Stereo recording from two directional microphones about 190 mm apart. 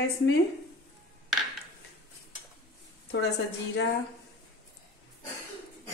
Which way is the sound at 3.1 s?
60° left (ahead or behind).